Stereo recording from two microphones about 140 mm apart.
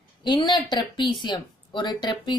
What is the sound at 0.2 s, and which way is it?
A woman's voice, 35° left (ahead or behind).